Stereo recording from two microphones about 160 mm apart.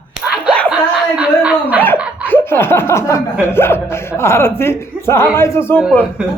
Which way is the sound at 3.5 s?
15° left (ahead or behind).